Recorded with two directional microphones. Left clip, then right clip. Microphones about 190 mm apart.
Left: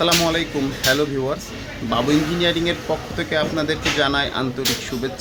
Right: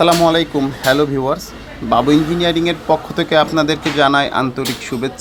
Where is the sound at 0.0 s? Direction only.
30° right (ahead or behind).